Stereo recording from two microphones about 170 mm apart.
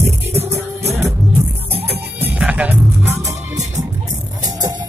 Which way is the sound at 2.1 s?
10° right (ahead or behind).